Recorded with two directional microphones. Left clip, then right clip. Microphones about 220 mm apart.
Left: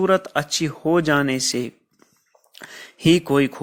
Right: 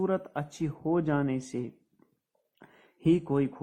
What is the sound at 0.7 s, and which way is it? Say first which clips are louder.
Speech: left 9 dB; 40° left (ahead or behind).